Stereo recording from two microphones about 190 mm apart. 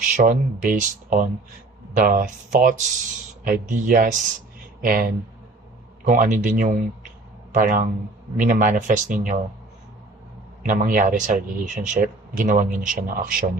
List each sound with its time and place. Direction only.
0.2 s speech: 45° right (ahead or behind)
10.6 s speech: 45° right (ahead or behind)